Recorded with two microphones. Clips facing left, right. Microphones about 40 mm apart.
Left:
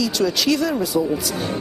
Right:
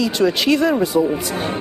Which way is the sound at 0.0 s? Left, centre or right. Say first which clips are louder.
Right 3 dB; right.